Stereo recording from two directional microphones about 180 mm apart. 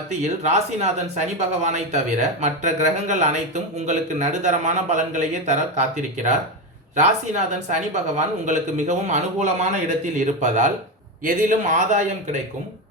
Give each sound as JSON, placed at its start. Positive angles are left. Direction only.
{"t": 0.2, "sound": "speech", "side_deg": -40}
{"t": 6.9, "sound": "a man's voice", "side_deg": -45}